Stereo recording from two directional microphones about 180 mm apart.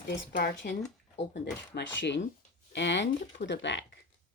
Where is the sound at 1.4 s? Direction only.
75° left (ahead or behind).